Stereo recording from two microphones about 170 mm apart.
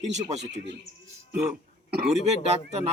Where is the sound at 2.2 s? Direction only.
40° right (ahead or behind).